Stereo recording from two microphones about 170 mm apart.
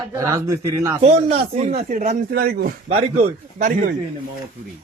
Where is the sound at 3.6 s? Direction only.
50° right (ahead or behind).